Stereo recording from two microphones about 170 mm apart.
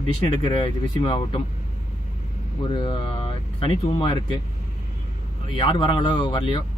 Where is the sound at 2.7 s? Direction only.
30° left (ahead or behind).